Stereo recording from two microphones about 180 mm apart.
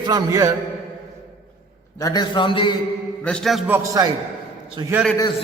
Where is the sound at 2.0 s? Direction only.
20° left (ahead or behind).